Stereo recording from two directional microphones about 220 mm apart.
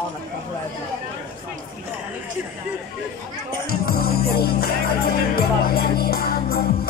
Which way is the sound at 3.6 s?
45° left (ahead or behind).